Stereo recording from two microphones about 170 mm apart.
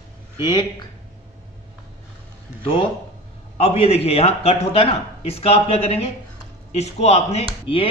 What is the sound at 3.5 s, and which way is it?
Speech, 35° left (ahead or behind).